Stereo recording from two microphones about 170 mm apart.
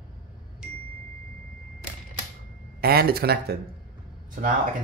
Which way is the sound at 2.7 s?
65° right (ahead or behind).